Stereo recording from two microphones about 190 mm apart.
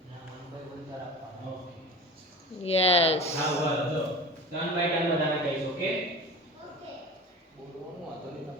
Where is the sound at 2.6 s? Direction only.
30° left (ahead or behind).